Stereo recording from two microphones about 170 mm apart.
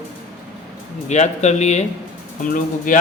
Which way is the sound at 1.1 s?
40° left (ahead or behind).